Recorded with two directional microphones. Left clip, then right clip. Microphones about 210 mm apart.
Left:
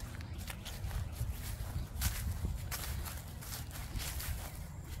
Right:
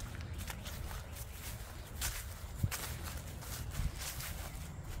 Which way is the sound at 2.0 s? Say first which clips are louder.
Even; centre (ahead or behind).